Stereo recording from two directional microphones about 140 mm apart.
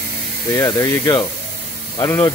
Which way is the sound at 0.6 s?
20° left (ahead or behind).